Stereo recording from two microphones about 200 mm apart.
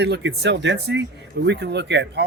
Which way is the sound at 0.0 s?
60° right (ahead or behind).